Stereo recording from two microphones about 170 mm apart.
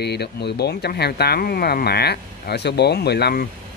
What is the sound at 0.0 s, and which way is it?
Speech, 75° left (ahead or behind).